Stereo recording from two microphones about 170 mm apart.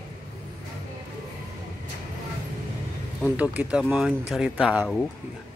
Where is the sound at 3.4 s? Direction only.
10° right (ahead or behind).